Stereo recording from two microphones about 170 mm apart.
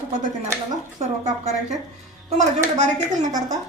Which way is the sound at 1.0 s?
40° right (ahead or behind).